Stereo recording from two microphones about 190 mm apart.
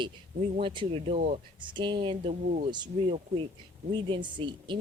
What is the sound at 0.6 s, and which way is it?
Speech, 25° right (ahead or behind).